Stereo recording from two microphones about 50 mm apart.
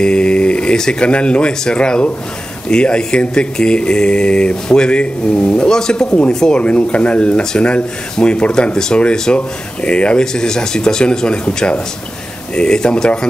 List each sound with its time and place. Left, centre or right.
0.0 s speech: centre
6.6 s speech: left